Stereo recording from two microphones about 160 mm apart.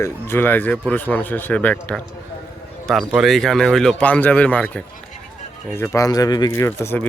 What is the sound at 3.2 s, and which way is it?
A man's voice, centre (ahead or behind).